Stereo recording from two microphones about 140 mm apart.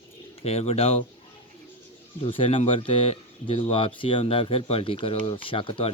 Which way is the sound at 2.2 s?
40° left (ahead or behind).